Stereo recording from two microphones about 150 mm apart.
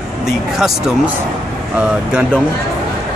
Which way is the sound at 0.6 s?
5° right (ahead or behind).